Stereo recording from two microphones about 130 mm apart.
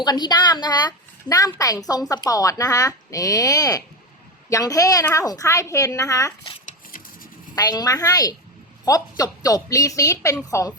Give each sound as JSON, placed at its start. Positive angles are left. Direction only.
{"t": 0.0, "sound": "a woman's voice", "side_deg": 30}
{"t": 7.5, "sound": "a woman's voice", "side_deg": 30}